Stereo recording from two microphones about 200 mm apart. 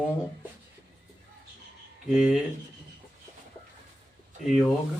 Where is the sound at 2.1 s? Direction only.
5° right (ahead or behind).